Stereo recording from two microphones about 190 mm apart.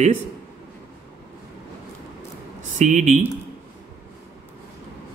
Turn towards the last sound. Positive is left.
turn(degrees=-40)  # may be behind; listen again after turning